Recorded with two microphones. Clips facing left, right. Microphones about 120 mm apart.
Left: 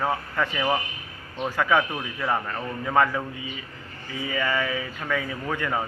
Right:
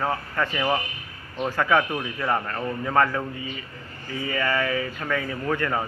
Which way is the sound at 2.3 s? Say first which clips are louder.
Right 2 dB; centre (ahead or behind).